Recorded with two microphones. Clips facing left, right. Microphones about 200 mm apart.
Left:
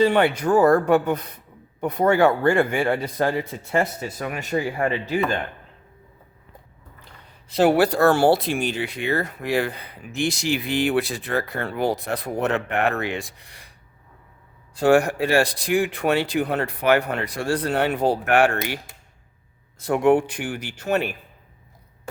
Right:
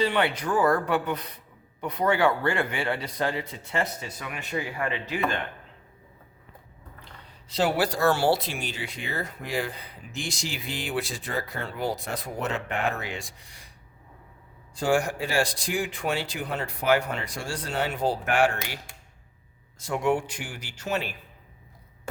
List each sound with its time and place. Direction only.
0.0 s speech: 45° left (ahead or behind)
7.4 s speech: 55° left (ahead or behind)
14.8 s speech: 60° left (ahead or behind)
19.8 s speech: 60° left (ahead or behind)